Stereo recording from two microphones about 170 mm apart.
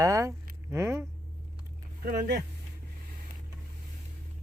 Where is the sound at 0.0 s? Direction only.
20° right (ahead or behind).